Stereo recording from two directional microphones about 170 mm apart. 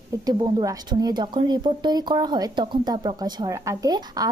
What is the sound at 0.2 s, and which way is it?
A woman's voice, 25° right (ahead or behind).